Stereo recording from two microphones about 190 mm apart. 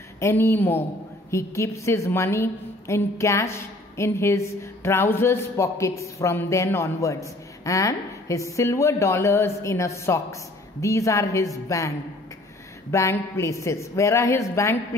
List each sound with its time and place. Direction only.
0.2 s a woman's voice: 10° left (ahead or behind)
12.9 s a woman's voice: 15° left (ahead or behind)